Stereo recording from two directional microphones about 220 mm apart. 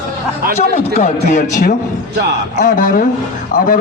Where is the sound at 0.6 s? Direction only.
30° left (ahead or behind).